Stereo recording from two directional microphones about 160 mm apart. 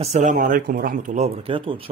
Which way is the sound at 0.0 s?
45° right (ahead or behind).